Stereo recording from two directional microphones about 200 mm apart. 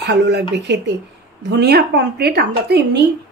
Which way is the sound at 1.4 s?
55° right (ahead or behind).